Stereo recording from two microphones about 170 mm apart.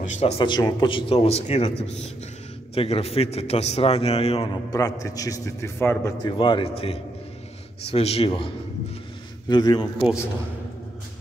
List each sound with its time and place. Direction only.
0.0 s a man's voice: 45° left (ahead or behind)
0.4 s a man's voice: 25° left (ahead or behind)
2.7 s a man's voice: 35° left (ahead or behind)
4.6 s a man's voice: 20° left (ahead or behind)
6.2 s a man's voice: 30° left (ahead or behind)
9.5 s a man's voice: 25° left (ahead or behind)
9.9 s a man's voice: 5° right (ahead or behind)